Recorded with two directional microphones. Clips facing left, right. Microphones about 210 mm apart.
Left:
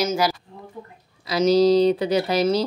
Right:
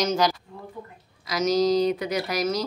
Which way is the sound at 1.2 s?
30° left (ahead or behind).